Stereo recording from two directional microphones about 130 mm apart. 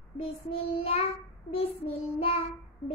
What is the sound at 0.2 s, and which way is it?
Child singing, 50° left (ahead or behind).